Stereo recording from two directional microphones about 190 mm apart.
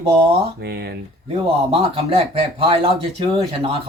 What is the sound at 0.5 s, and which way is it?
Speech, 60° right (ahead or behind).